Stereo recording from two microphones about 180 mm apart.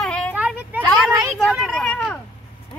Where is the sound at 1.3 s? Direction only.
Centre (ahead or behind).